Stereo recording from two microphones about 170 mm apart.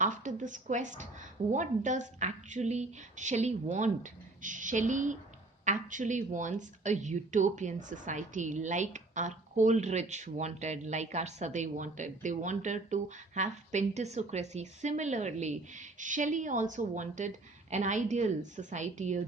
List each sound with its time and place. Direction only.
0.0 s speech: 45° right (ahead or behind)